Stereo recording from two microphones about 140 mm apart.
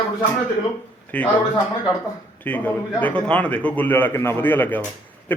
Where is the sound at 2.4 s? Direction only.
10° left (ahead or behind).